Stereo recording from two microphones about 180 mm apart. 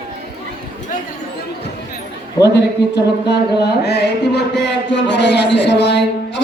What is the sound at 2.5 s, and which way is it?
A man's voice, 65° left (ahead or behind).